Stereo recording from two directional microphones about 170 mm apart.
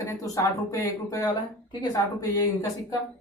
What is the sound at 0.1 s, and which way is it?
A woman's voice, 20° left (ahead or behind).